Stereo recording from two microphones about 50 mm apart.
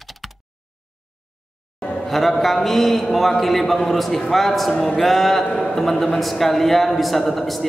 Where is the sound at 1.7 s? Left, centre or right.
Centre.